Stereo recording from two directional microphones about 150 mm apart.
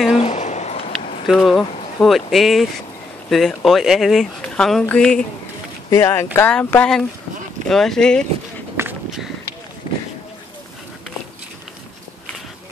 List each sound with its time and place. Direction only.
0.1 s a sound: 45° left (ahead or behind)
1.2 s speech: centre (ahead or behind)
5.9 s speech: 20° left (ahead or behind); by 8.3 s 5° left (ahead or behind)